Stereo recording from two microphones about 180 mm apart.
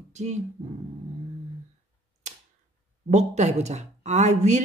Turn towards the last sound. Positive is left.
turn(degrees=-40)  # may be behind; listen again after turning